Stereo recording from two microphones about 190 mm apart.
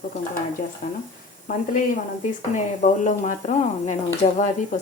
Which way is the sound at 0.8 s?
45° left (ahead or behind).